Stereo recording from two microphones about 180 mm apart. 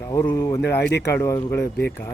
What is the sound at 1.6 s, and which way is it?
Speech, 65° left (ahead or behind).